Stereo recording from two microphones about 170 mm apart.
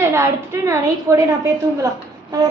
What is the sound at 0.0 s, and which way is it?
A woman's voice, 15° right (ahead or behind).